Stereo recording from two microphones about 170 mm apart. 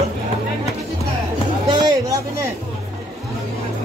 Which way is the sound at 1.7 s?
25° right (ahead or behind).